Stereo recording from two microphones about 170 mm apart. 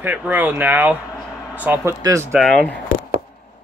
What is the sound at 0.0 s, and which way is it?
Speech, 10° right (ahead or behind).